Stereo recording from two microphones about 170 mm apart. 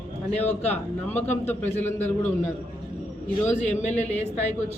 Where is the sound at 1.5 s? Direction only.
10° left (ahead or behind).